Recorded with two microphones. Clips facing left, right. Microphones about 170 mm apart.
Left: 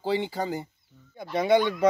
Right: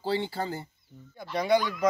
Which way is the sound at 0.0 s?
15° left (ahead or behind).